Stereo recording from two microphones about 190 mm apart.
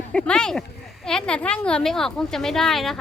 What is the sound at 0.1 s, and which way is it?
Speech, 5° left (ahead or behind).